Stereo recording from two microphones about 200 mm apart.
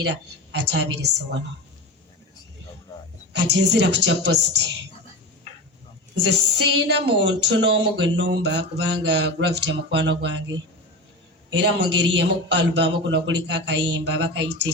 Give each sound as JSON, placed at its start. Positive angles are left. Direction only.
{"t": 0.5, "sound": "a man's voice", "side_deg": -60}
{"t": 3.3, "sound": "a man's voice", "side_deg": -55}
{"t": 6.2, "sound": "a man's voice", "side_deg": -60}